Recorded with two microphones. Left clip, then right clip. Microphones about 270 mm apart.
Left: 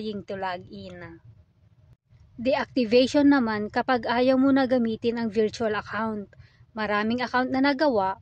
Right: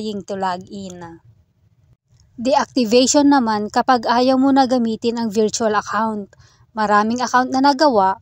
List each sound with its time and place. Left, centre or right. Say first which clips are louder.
0.0 s speech: right 8 dB; centre
2.4 s speech: right 8 dB; right